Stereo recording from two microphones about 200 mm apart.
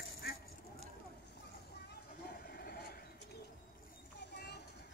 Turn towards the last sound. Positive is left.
turn(degrees=55)  # may be behind; listen again after turning